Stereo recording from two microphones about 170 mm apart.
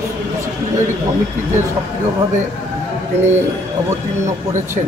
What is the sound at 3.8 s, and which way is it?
Speech, 15° right (ahead or behind).